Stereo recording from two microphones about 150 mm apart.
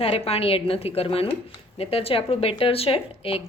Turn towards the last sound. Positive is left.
turn(degrees=40)  # may be behind; listen again after turning